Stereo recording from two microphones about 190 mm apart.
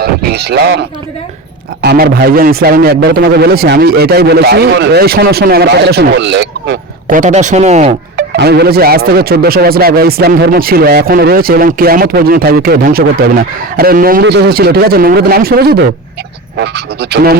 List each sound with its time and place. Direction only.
0.0 s a man's voice: 55° right (ahead or behind)
7.1 s speech: 40° right (ahead or behind)
8.1 s a man's voice: 60° right (ahead or behind)